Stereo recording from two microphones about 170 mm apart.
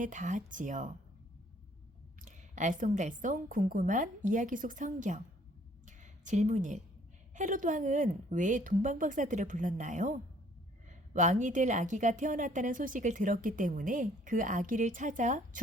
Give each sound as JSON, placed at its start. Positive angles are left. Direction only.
{"t": 0.0, "sound": "a woman's voice", "side_deg": -50}
{"t": 2.2, "sound": "a woman's voice", "side_deg": -45}
{"t": 5.8, "sound": "a sound", "side_deg": -45}
{"t": 7.3, "sound": "a woman's voice", "side_deg": -50}